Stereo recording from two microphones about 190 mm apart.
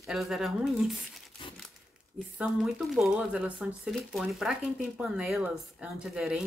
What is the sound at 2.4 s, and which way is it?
Speech, 5° right (ahead or behind).